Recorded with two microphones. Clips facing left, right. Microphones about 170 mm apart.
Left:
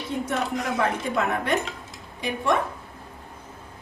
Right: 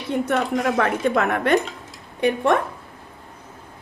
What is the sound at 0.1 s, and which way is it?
A woman's voice, 65° right (ahead or behind).